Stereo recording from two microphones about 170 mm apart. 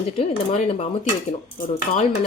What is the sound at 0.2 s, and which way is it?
Speech, 40° left (ahead or behind).